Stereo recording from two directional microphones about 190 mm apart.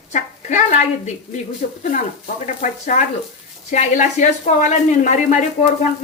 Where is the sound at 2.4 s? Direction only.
40° left (ahead or behind).